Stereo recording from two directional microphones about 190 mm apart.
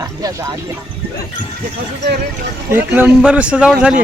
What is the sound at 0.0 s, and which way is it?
Music, 15° right (ahead or behind).